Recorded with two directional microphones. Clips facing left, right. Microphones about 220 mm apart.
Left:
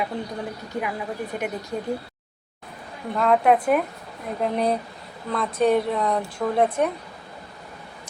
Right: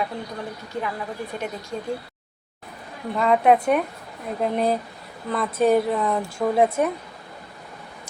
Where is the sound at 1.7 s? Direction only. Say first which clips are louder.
Left 1 dB; 15° left (ahead or behind).